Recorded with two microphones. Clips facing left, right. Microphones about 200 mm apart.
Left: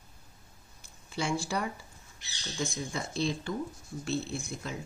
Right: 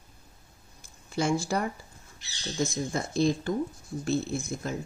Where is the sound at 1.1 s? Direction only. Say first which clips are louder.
Right 5 dB; 45° right (ahead or behind).